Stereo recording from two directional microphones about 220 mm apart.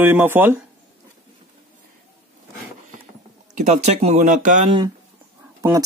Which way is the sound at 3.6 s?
30° right (ahead or behind).